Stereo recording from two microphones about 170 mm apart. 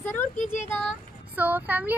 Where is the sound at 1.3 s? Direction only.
10° right (ahead or behind).